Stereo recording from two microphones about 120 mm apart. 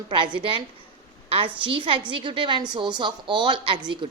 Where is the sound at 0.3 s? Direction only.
45° right (ahead or behind).